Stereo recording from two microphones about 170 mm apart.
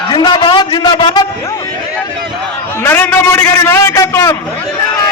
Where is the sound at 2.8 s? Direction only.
10° left (ahead or behind).